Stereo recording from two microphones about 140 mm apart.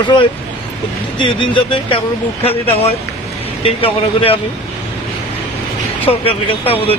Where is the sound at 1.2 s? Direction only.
40° left (ahead or behind).